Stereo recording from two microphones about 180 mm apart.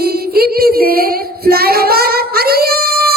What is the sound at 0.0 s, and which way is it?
Singing, 60° right (ahead or behind).